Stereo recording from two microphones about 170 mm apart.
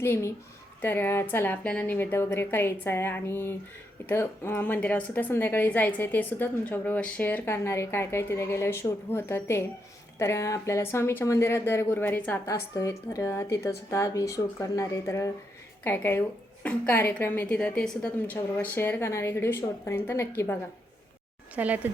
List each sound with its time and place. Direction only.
0.0 s speech: 15° left (ahead or behind)
21.5 s speech: 10° right (ahead or behind)